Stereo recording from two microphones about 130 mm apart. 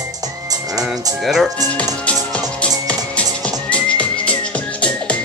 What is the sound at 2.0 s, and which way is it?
Music, 10° left (ahead or behind).